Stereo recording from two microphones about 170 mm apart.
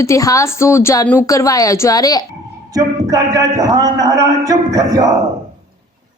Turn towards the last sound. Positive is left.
turn(degrees=-20)  # may be behind; listen again after turning